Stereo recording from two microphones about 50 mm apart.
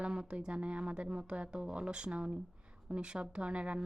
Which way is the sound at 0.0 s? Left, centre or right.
Centre.